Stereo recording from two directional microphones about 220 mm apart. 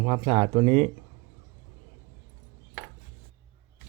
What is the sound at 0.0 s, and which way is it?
Speech, 25° right (ahead or behind).